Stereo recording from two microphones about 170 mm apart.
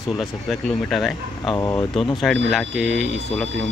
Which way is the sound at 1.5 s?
15° left (ahead or behind).